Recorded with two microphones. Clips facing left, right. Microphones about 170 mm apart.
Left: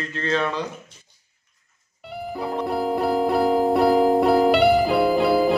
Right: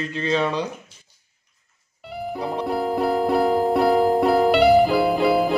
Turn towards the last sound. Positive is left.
turn(degrees=0)  # may be behind; listen again after turning